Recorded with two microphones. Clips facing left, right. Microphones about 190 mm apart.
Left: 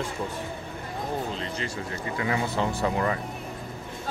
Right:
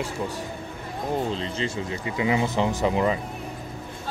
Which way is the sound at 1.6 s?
15° right (ahead or behind).